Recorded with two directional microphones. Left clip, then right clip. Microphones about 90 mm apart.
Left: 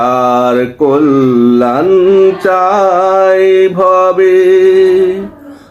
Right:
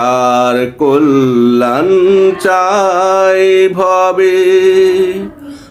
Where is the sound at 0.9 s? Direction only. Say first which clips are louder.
Even; 35° right (ahead or behind).